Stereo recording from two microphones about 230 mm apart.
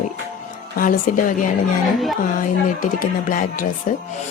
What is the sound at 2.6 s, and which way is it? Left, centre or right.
Speech, left.